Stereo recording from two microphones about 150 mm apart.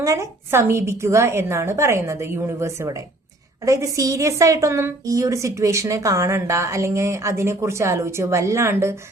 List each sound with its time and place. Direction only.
0.0 s a woman's voice: 20° right (ahead or behind)